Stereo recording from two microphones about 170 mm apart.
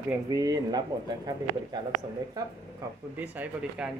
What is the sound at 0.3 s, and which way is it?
Speech, 20° right (ahead or behind).